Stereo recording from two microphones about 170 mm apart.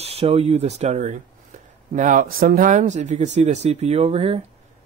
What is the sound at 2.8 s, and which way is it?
Speech, 40° right (ahead or behind).